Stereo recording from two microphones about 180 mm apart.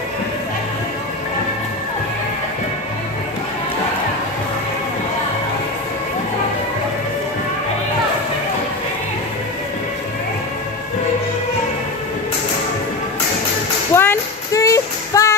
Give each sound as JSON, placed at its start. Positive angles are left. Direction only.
{"t": 13.9, "sound": "music", "side_deg": 15}